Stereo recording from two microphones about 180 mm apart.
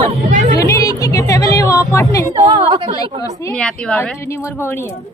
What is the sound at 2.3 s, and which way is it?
Speech, 25° right (ahead or behind).